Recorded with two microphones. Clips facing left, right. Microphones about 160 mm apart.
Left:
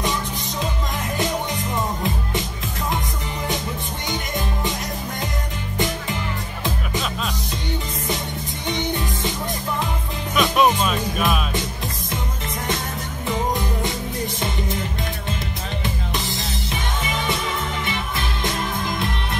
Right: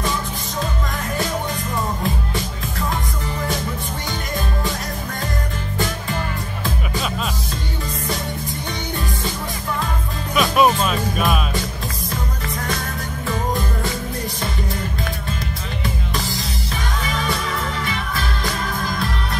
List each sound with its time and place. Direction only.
10.3 s music: centre (ahead or behind)
16.2 s music: 20° left (ahead or behind)